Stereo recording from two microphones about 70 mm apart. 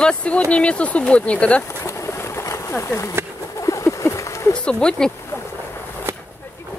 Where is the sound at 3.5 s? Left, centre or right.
Left.